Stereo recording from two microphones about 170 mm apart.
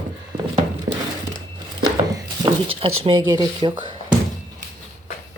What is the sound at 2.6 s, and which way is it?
Speech, 30° right (ahead or behind).